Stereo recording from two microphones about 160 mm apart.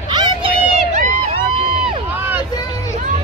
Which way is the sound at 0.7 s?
45° right (ahead or behind).